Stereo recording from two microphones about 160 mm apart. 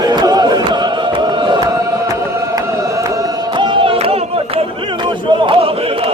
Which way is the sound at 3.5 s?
30° right (ahead or behind).